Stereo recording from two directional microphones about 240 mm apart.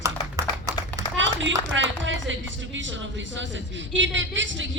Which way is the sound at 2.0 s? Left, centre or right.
Right.